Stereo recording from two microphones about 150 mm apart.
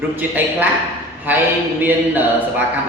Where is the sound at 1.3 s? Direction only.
10° right (ahead or behind).